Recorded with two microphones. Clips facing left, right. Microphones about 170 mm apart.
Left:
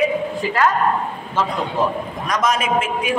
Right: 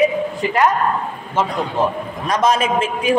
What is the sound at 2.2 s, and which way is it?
Speech, 30° right (ahead or behind).